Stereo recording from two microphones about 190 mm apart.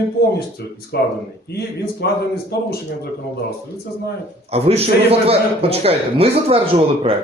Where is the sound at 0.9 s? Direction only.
55° left (ahead or behind).